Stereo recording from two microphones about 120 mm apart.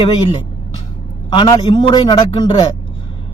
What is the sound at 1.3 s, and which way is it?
A man's voice, 35° left (ahead or behind).